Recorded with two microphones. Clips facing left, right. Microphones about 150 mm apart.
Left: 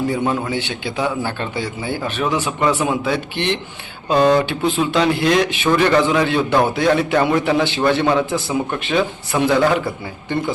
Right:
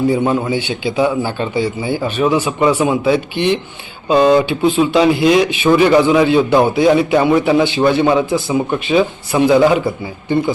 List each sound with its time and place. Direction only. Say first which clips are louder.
0.1 s a man's voice: right 5 dB; 10° right (ahead or behind)